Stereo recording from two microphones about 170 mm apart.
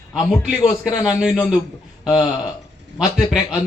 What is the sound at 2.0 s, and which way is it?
Speech, 25° left (ahead or behind).